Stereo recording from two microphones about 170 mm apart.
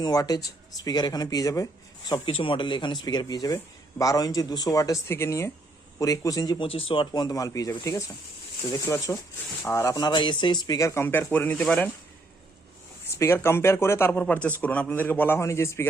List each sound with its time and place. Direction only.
0.0 s speech: 20° left (ahead or behind); by 11.9 s 5° left (ahead or behind)
13.1 s speech: 15° left (ahead or behind)